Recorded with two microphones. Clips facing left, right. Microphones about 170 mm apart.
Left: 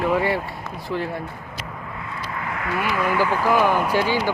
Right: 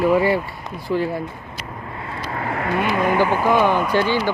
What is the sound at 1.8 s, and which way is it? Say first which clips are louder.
Vehicle: right 5 dB; 35° right (ahead or behind).